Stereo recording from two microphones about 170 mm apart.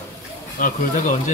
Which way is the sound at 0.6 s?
55° left (ahead or behind).